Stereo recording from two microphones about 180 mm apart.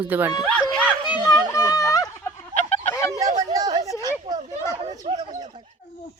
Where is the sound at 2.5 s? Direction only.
40° left (ahead or behind).